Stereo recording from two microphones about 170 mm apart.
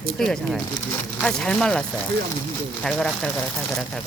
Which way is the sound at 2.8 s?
5° left (ahead or behind).